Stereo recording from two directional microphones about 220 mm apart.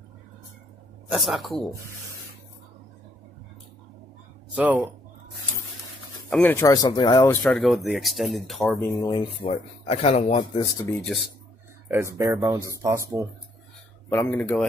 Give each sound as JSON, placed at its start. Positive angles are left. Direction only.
{"t": 1.1, "sound": "speech", "side_deg": 0}
{"t": 4.6, "sound": "speech", "side_deg": -5}
{"t": 6.3, "sound": "speech", "side_deg": 10}
{"t": 9.1, "sound": "speech", "side_deg": 20}
{"t": 12.2, "sound": "speech", "side_deg": -15}
{"t": 14.0, "sound": "speech", "side_deg": 10}